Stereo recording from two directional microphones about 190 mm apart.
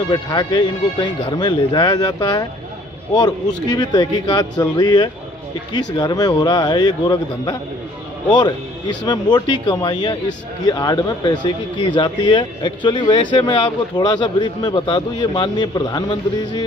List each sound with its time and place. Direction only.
0.1 s speech: 20° left (ahead or behind)